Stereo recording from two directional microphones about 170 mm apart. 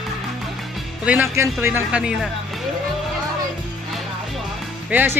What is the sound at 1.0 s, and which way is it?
Speech, 10° right (ahead or behind).